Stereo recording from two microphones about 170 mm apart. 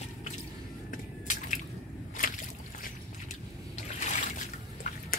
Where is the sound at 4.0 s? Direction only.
45° left (ahead or behind).